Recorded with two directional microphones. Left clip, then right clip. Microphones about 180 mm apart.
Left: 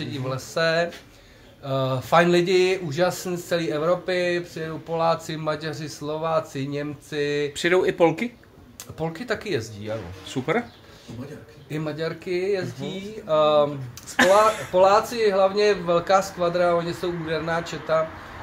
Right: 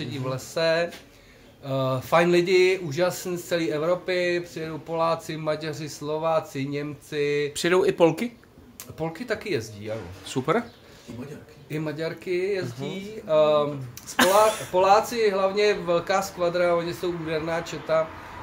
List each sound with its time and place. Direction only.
0.0 s speech: centre (ahead or behind)
7.6 s speech: 10° right (ahead or behind)
8.9 s speech: centre (ahead or behind)
10.4 s speech: 20° right (ahead or behind)
11.7 s speech: centre (ahead or behind)